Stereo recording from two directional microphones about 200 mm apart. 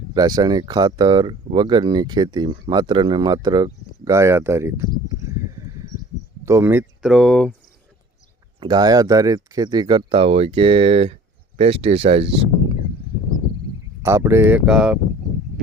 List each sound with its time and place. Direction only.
0.1 s speech: 20° right (ahead or behind)
5.5 s a sound: 15° right (ahead or behind)
6.4 s speech: 15° right (ahead or behind)
7.0 s speech: centre (ahead or behind)
8.6 s speech: 20° right (ahead or behind)
14.0 s speech: 15° right (ahead or behind)